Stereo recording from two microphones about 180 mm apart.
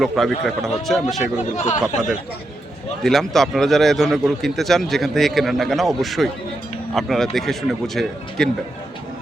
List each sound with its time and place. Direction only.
0.0 s a man's voice: centre (ahead or behind)
1.5 s speech: 40° left (ahead or behind)
3.0 s a man's voice: centre (ahead or behind)